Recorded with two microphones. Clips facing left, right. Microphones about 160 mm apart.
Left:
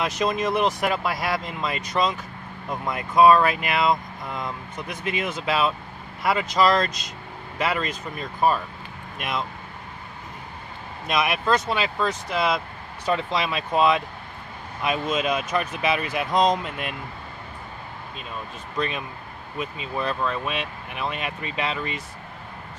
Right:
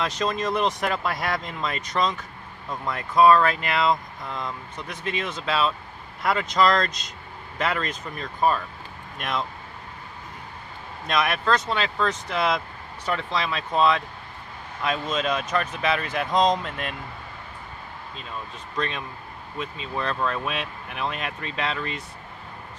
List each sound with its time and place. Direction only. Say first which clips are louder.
0.0 s speech: left 2 dB; 10° left (ahead or behind)
11.1 s speech: left 1 dB; 5° left (ahead or behind)
13.0 s speech: left 3 dB; 15° left (ahead or behind)
18.8 s speech: left 2 dB; 10° left (ahead or behind)